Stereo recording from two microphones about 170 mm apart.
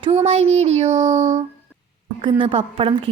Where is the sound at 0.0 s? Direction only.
35° right (ahead or behind).